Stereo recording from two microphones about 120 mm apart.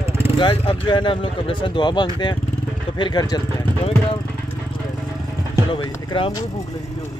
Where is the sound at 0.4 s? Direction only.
40° left (ahead or behind).